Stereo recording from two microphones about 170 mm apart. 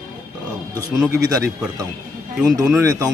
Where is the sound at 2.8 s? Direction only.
20° right (ahead or behind).